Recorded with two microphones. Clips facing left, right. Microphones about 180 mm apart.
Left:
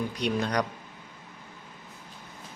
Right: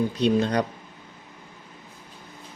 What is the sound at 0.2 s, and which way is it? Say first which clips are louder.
Speech: right 6 dB; 25° right (ahead or behind).